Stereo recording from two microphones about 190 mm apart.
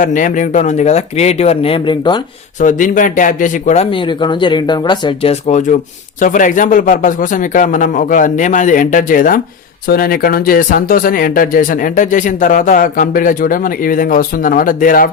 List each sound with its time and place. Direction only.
0.0 s speech: 45° left (ahead or behind); by 2.2 s 25° left (ahead or behind)
2.6 s speech: 40° left (ahead or behind)
3.9 s speech: 25° left (ahead or behind); by 15.1 s 45° left (ahead or behind)